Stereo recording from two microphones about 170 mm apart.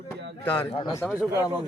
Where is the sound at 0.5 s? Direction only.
30° left (ahead or behind).